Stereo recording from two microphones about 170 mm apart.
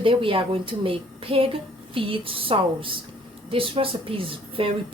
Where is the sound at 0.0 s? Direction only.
30° right (ahead or behind).